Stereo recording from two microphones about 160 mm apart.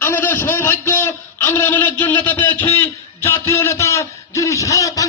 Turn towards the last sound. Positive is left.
turn(degrees=20)  # may be behind; listen again after turning